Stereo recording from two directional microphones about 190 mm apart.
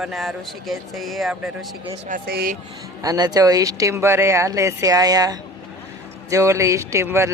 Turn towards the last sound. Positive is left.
turn(degrees=-15)  # may be behind; listen again after turning